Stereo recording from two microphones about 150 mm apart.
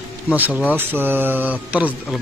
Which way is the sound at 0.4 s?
10° right (ahead or behind).